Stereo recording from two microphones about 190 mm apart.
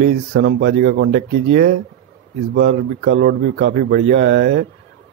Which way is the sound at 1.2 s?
50° right (ahead or behind).